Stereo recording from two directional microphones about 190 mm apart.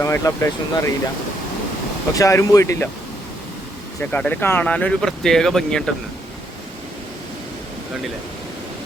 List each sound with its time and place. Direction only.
0.0 s speech: 15° left (ahead or behind)
2.1 s speech: 15° left (ahead or behind)
4.1 s speech: 10° left (ahead or behind)